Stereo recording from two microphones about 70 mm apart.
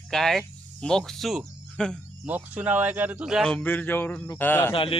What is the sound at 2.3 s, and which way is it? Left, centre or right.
Speech, right.